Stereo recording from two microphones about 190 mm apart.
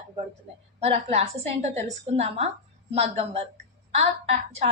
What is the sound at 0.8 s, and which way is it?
A woman's voice, 30° right (ahead or behind).